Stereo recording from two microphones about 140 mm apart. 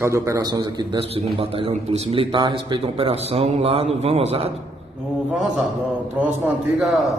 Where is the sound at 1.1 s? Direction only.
45° right (ahead or behind).